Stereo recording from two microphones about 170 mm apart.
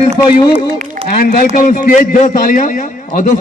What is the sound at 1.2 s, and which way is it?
A man's voice, 55° left (ahead or behind).